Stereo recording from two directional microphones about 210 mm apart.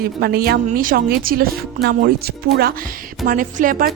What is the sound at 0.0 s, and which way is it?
A woman's voice, 50° right (ahead or behind).